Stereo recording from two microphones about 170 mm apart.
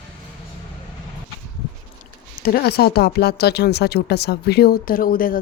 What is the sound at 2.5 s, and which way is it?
Speech, 65° left (ahead or behind).